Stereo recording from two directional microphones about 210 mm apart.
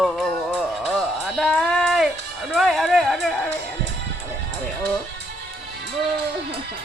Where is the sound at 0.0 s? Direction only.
Centre (ahead or behind).